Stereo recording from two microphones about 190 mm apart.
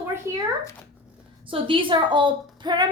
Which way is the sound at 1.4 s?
25° right (ahead or behind).